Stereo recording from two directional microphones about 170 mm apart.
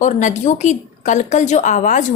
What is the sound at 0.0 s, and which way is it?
A woman's voice, 45° left (ahead or behind).